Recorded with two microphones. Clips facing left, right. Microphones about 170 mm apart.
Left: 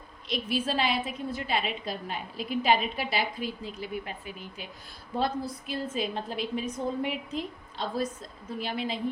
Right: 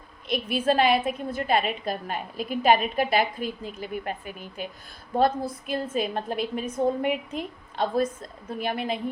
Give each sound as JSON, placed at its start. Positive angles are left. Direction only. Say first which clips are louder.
{"t": 0.3, "sound": "a woman's voice", "louder": "right 6 dB", "side_deg": -55}